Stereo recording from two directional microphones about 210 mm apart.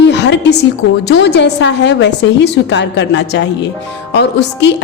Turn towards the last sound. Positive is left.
turn(degrees=55)  # may be behind; listen again after turning